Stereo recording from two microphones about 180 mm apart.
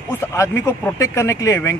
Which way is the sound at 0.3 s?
15° left (ahead or behind).